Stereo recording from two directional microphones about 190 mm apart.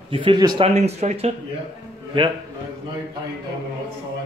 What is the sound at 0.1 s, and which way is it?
Speech, 25° right (ahead or behind).